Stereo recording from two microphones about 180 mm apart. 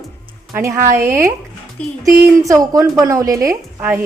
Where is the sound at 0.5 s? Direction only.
15° right (ahead or behind).